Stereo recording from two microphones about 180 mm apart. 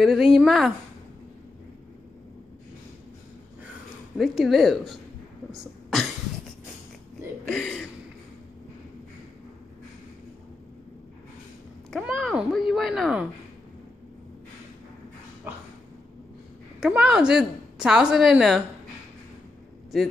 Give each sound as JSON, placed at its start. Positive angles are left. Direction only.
{"t": 0.0, "sound": "a woman's voice", "side_deg": 0}
{"t": 4.2, "sound": "a woman's voice", "side_deg": 0}
{"t": 5.5, "sound": "cough", "side_deg": 0}
{"t": 7.4, "sound": "a woman's voice", "side_deg": 0}
{"t": 11.9, "sound": "a woman's voice", "side_deg": 0}
{"t": 16.8, "sound": "a woman's voice", "side_deg": -5}